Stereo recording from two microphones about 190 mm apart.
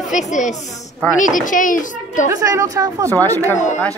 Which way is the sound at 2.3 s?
15° right (ahead or behind).